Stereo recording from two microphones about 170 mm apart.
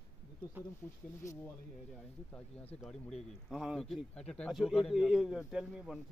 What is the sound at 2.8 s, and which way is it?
A man's voice, 5° left (ahead or behind).